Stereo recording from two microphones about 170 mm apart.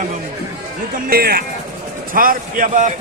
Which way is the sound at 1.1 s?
65° right (ahead or behind).